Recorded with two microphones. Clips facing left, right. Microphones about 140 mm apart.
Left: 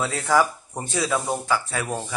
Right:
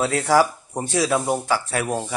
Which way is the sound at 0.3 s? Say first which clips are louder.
Right 1 dB; 10° right (ahead or behind).